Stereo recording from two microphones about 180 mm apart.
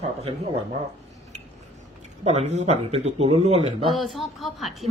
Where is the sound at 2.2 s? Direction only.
35° right (ahead or behind).